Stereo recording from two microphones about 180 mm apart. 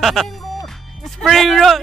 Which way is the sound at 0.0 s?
Centre (ahead or behind).